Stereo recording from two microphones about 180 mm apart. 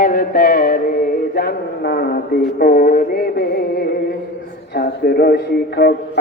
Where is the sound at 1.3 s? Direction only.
60° left (ahead or behind).